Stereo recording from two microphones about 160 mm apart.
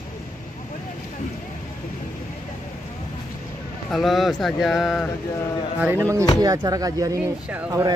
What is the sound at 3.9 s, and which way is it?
Speech, centre (ahead or behind).